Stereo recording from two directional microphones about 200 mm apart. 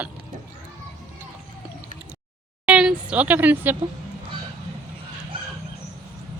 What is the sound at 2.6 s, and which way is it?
Speech, 5° right (ahead or behind).